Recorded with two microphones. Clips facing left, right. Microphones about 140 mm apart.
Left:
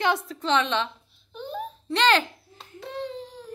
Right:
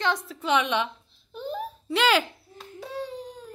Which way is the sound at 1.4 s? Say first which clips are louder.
Right 1 dB; 5° right (ahead or behind).